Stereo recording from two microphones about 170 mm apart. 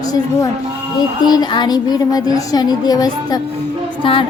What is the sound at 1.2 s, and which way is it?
A woman's voice, 25° left (ahead or behind).